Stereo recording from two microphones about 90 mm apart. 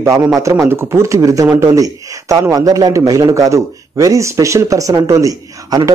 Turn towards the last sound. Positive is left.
turn(degrees=-45)  # may be behind; listen again after turning